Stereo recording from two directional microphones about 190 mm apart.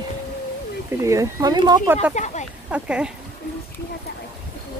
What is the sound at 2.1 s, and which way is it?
Speech, 40° left (ahead or behind).